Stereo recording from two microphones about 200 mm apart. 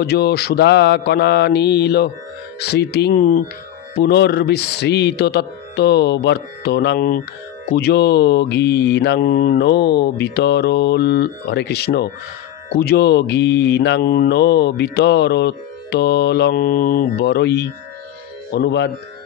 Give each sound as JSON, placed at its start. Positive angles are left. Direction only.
{"t": 0.0, "sound": "mantra", "side_deg": 50}
{"t": 3.9, "sound": "mantra", "side_deg": 55}